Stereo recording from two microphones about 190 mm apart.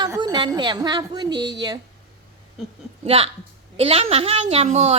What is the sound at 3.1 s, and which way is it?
A woman's voice, 30° right (ahead or behind).